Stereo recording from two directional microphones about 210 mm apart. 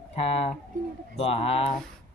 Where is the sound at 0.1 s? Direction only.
30° left (ahead or behind).